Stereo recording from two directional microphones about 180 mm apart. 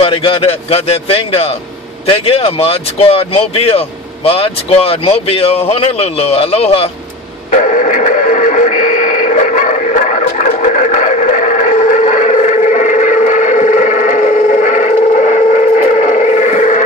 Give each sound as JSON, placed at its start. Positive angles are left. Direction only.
{"t": 0.0, "sound": "speech", "side_deg": 30}
{"t": 7.5, "sound": "radio", "side_deg": 45}